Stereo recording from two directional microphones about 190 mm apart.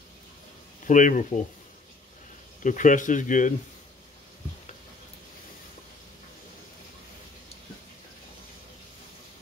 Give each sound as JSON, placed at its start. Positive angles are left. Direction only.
{"t": 0.8, "sound": "speech", "side_deg": 45}
{"t": 2.6, "sound": "speech", "side_deg": 40}